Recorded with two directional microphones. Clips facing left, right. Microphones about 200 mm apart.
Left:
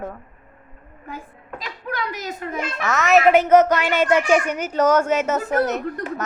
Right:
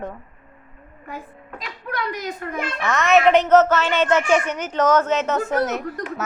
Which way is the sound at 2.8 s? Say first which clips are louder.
Even; centre (ahead or behind).